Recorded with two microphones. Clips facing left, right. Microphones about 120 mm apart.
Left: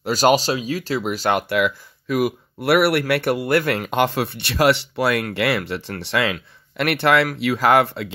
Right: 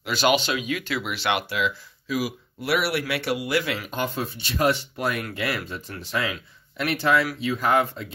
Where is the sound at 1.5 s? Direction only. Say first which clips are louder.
Left 6 dB; 60° left (ahead or behind); by 6.3 s 80° left.